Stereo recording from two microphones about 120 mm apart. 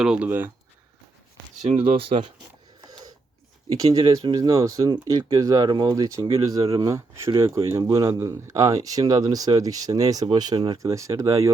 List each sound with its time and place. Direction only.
0.0 s speech: 10° right (ahead or behind)
1.6 s speech: 55° right (ahead or behind)
2.8 s a sound: 35° right (ahead or behind)
3.9 s speech: 35° right (ahead or behind)
10.8 s speech: 25° right (ahead or behind)